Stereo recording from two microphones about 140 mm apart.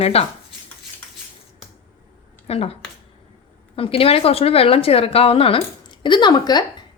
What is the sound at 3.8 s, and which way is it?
A woman's voice, 45° left (ahead or behind).